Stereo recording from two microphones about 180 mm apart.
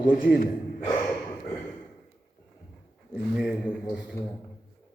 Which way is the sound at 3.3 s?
Centre (ahead or behind).